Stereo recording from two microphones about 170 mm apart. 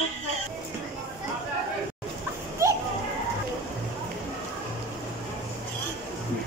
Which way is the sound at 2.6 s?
15° right (ahead or behind).